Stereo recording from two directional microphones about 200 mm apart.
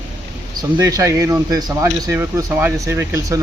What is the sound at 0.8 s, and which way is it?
Speech, 15° right (ahead or behind).